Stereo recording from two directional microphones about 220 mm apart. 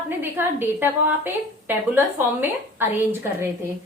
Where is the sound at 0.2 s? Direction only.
10° right (ahead or behind).